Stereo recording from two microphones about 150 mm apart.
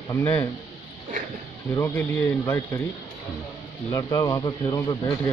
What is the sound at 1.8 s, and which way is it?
Speech, 10° left (ahead or behind).